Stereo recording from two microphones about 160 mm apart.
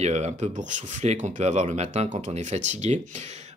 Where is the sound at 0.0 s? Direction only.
45° right (ahead or behind).